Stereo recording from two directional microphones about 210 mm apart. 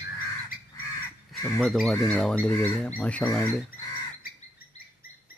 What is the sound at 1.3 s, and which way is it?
Speech, centre (ahead or behind).